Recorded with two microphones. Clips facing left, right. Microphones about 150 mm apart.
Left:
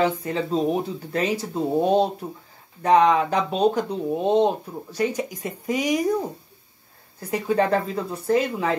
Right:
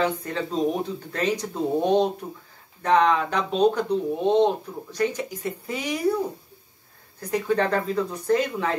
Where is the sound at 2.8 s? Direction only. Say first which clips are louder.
Left 3 dB; 10° left (ahead or behind).